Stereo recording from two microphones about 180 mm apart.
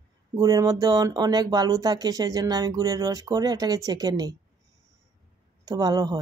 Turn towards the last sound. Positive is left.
turn(degrees=-20)  # may be behind; listen again after turning